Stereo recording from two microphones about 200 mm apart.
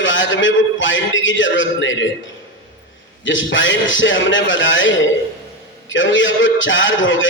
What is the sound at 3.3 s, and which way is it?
A man's voice, 70° left (ahead or behind).